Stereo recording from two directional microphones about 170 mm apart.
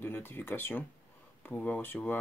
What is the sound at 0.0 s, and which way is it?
Speech, 15° left (ahead or behind).